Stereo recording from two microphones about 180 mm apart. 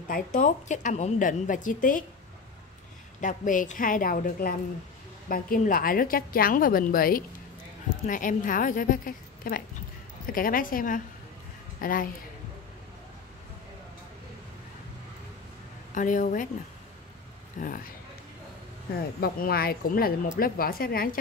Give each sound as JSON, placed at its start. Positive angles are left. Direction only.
{"t": 0.1, "sound": "a woman's voice", "side_deg": 50}
{"t": 3.2, "sound": "a woman's voice", "side_deg": 45}
{"t": 15.9, "sound": "a woman's voice", "side_deg": 45}
{"t": 17.6, "sound": "a woman's voice", "side_deg": 45}
{"t": 19.1, "sound": "speech", "side_deg": 60}